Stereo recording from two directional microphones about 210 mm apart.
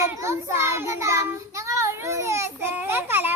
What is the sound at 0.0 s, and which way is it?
Child singing, 15° right (ahead or behind).